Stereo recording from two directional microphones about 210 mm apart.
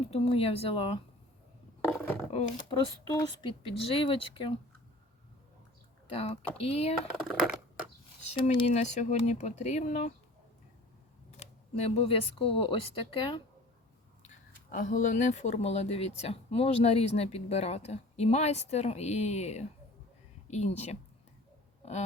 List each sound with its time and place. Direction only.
0.1 s speech: 30° left (ahead or behind)
1.8 s a sound: 10° left (ahead or behind)
2.3 s speech: 25° left (ahead or behind)
6.1 s speech: 30° left (ahead or behind)
7.3 s a sound: centre (ahead or behind)
8.3 s speech: 25° left (ahead or behind)
11.3 s speech: 30° left (ahead or behind)
14.2 s speech: 40° left (ahead or behind)